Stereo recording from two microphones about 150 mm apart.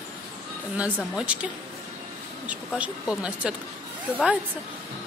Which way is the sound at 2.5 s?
10° right (ahead or behind).